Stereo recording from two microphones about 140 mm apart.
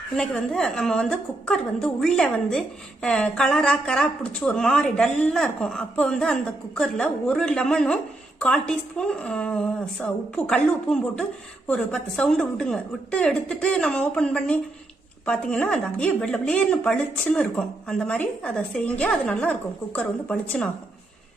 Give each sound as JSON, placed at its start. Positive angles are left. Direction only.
{"t": 0.2, "sound": "a woman's voice", "side_deg": 5}